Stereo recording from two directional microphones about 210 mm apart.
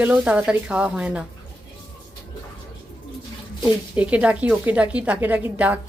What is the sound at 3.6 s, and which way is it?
Speech, 5° right (ahead or behind).